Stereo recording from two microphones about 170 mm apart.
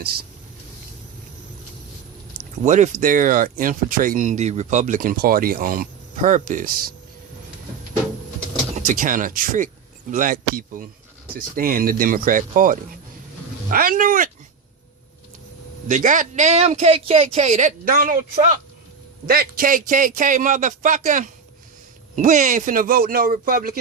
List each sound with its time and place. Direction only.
2.6 s speech: 45° right (ahead or behind)
8.9 s a man's voice: 50° right (ahead or behind)
15.9 s speech: 50° right (ahead or behind)
19.3 s a man's voice: 60° right (ahead or behind)